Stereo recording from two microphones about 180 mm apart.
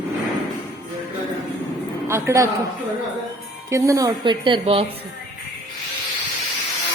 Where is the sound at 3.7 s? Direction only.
15° right (ahead or behind).